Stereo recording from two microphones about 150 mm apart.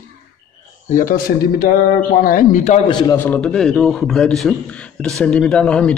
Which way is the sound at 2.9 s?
30° left (ahead or behind).